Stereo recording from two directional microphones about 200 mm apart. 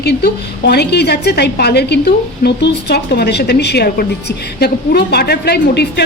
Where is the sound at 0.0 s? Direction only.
55° left (ahead or behind).